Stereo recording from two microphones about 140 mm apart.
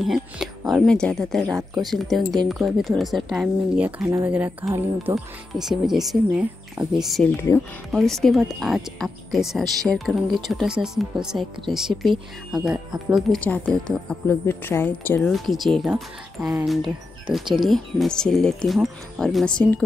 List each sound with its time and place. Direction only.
0.0 s speech: centre (ahead or behind)
3.8 s speech: 20° right (ahead or behind)
5.6 s speech: 5° right (ahead or behind)
7.5 s speech: 20° left (ahead or behind)
7.9 s speech: 5° left (ahead or behind)
13.4 s speech: 10° left (ahead or behind)
15.3 s speech: centre (ahead or behind)